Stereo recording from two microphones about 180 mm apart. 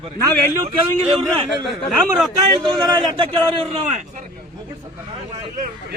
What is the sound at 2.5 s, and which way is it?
Speech, 20° right (ahead or behind).